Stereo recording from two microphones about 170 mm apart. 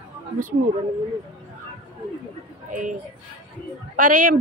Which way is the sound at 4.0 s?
50° right (ahead or behind).